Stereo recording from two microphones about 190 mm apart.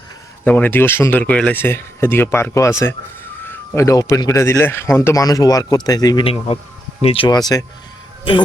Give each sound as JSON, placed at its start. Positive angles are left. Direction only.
{"t": 0.4, "sound": "speech", "side_deg": 10}